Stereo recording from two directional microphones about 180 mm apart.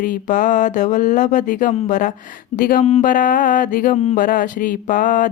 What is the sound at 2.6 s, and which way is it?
Speech, 55° left (ahead or behind).